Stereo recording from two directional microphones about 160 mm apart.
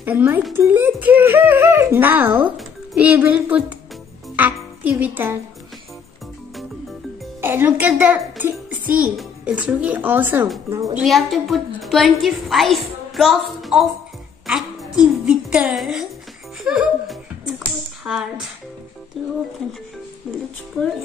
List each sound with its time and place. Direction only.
0.0 s a child's voice: 10° right (ahead or behind)
7.4 s a child's voice: 10° right (ahead or behind)
11.0 s a woman's voice: centre (ahead or behind)
14.4 s music: centre (ahead or behind)
15.2 s a woman's voice: 5° right (ahead or behind)